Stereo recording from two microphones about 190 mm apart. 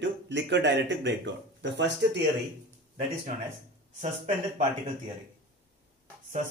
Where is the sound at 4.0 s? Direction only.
40° right (ahead or behind).